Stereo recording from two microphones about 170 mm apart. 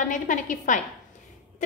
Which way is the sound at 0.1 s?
50° left (ahead or behind).